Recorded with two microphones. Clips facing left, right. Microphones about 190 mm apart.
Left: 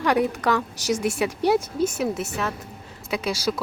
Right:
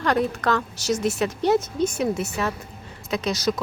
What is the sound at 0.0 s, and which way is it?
A woman's voice, 10° left (ahead or behind).